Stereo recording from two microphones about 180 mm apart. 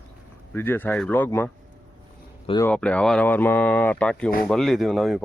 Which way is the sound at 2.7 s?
5° left (ahead or behind).